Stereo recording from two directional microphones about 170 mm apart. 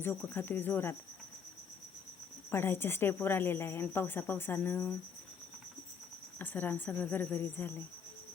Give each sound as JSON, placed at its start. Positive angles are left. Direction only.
{"t": 0.0, "sound": "a woman's voice", "side_deg": 10}
{"t": 2.5, "sound": "a woman's voice", "side_deg": 15}
{"t": 6.4, "sound": "a woman's voice", "side_deg": 10}